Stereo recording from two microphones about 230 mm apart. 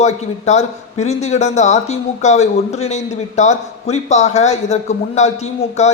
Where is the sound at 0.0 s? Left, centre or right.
Left.